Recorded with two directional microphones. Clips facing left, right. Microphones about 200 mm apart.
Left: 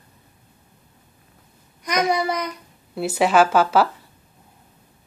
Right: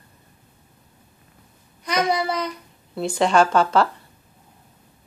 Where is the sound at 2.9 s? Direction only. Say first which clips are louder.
Left 1 dB; 5° left (ahead or behind).